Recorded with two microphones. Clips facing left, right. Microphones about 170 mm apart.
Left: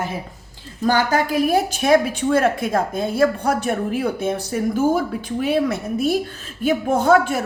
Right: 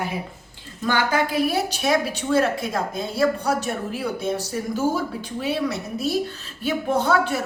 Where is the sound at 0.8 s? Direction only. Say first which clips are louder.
Left 3 dB; 40° left (ahead or behind).